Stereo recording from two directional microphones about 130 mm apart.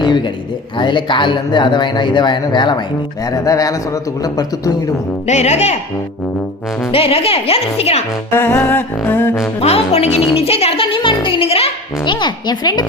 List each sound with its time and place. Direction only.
0.0 s a sound: 35° left (ahead or behind)
0.8 s a man's voice: 35° left (ahead or behind)
5.2 s speech: 60° left (ahead or behind)
6.9 s speech: 50° left (ahead or behind)
8.3 s humming: 15° left (ahead or behind)
9.6 s speech: 50° left (ahead or behind); by 12.9 s 35° left (ahead or behind)